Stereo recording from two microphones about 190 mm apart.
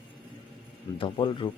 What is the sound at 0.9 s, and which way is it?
Speech, 25° left (ahead or behind).